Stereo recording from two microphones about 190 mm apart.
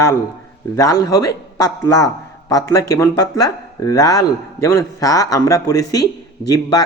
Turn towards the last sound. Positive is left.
turn(degrees=20)  # may be behind; listen again after turning